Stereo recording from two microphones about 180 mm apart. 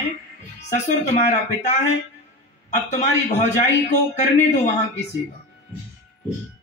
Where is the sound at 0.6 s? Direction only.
40° left (ahead or behind).